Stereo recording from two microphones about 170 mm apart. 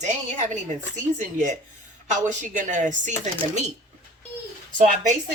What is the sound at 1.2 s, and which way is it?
Speech, 45° right (ahead or behind).